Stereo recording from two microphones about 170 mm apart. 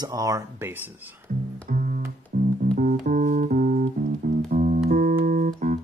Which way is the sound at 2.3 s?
50° right (ahead or behind).